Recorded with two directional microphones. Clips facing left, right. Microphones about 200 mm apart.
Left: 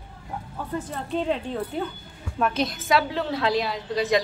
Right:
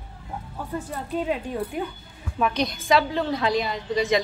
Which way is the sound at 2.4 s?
Centre (ahead or behind).